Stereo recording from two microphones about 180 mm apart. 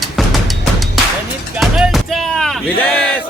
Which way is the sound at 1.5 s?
Centre (ahead or behind).